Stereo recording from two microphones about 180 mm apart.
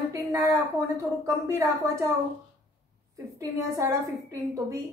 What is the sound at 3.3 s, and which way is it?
Speech, 15° right (ahead or behind).